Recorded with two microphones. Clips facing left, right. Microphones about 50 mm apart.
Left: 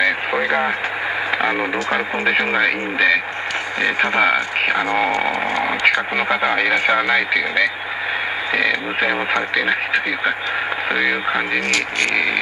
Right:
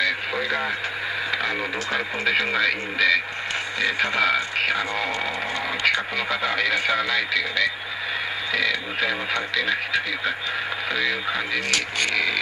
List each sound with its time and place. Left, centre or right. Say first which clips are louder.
0.0 s radio: left 6 dB; left
1.4 s speech: left 6 dB; left